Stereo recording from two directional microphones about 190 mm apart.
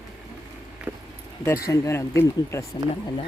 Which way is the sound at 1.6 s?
15° left (ahead or behind).